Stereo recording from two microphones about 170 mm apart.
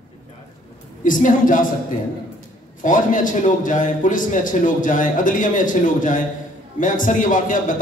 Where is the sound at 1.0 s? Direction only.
50° left (ahead or behind).